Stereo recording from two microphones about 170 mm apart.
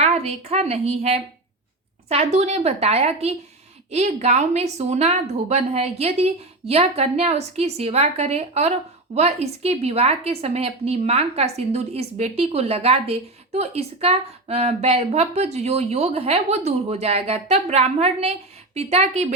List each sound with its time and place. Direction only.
0.0 s a woman's voice: 40° right (ahead or behind)